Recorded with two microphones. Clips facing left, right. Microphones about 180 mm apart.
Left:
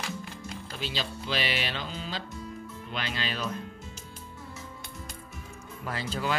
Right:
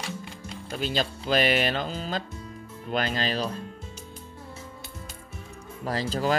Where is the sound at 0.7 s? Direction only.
50° right (ahead or behind); by 3.6 s 30° right (ahead or behind).